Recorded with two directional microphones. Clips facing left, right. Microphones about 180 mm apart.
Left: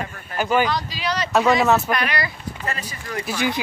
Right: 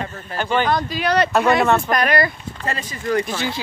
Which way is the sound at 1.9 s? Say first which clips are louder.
Right 5 dB; 45° right (ahead or behind).